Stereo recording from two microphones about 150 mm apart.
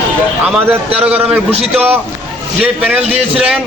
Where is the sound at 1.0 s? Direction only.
10° right (ahead or behind).